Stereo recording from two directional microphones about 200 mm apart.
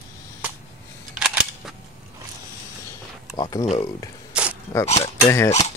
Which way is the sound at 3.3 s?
20° left (ahead or behind).